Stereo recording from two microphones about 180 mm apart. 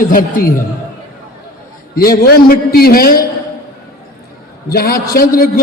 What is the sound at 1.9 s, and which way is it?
A man's voice, 55° left (ahead or behind).